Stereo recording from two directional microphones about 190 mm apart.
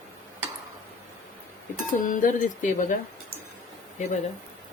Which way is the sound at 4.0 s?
40° left (ahead or behind).